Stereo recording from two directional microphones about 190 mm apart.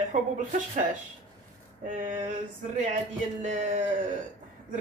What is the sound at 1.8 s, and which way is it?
Speech, 45° right (ahead or behind).